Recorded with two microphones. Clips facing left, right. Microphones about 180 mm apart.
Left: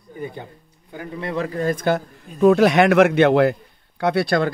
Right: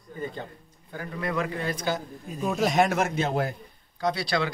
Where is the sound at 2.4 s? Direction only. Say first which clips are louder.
Left 10 dB; 70° left (ahead or behind).